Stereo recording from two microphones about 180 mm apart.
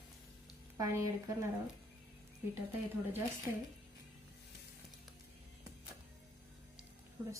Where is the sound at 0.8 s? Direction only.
15° right (ahead or behind).